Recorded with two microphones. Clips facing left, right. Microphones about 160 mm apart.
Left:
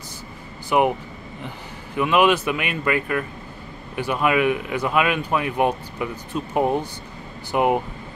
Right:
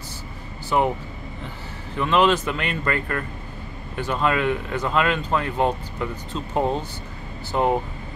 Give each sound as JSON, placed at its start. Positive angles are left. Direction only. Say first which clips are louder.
{"t": 0.7, "sound": "speech", "louder": "left 2 dB", "side_deg": 15}
{"t": 2.0, "sound": "speech", "louder": "left 1 dB", "side_deg": 10}